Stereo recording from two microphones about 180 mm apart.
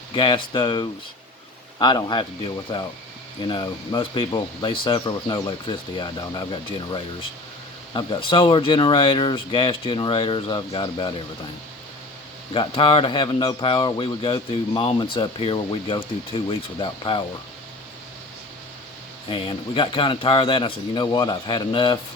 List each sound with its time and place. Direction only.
0.1 s a man's voice: 25° left (ahead or behind)
12.5 s a man's voice: 30° left (ahead or behind)
19.3 s a man's voice: 30° left (ahead or behind)